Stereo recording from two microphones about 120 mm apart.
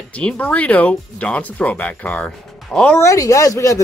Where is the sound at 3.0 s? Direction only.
25° left (ahead or behind).